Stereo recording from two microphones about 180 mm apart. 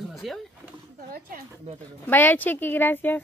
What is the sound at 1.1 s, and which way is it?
Speech, 55° right (ahead or behind).